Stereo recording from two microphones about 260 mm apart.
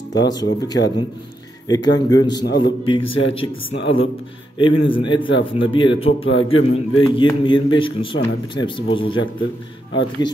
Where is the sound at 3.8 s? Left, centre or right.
Left.